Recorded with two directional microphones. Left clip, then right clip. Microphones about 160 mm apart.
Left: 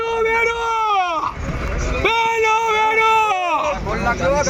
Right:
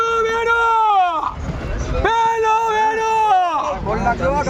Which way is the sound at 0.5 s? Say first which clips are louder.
Right 4 dB; 15° right (ahead or behind).